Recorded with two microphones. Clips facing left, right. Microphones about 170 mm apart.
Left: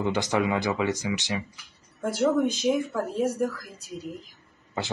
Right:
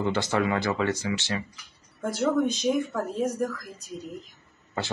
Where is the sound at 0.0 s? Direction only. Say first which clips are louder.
Even; 15° left (ahead or behind).